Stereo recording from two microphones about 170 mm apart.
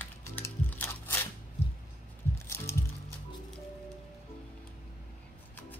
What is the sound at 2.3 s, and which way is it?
Music, 15° left (ahead or behind).